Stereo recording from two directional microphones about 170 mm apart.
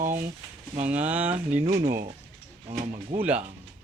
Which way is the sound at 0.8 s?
10° right (ahead or behind).